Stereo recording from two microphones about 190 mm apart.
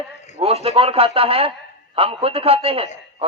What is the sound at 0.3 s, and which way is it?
A man's voice, 30° right (ahead or behind).